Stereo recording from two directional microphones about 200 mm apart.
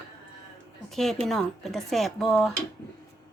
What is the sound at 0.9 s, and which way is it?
Speech, centre (ahead or behind).